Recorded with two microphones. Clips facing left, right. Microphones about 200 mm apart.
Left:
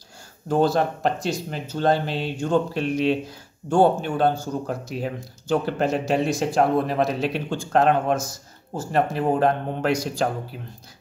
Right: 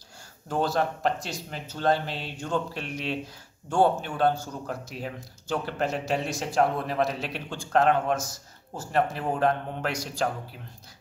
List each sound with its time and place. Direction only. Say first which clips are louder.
0.5 s speech: left 6 dB; 30° left (ahead or behind)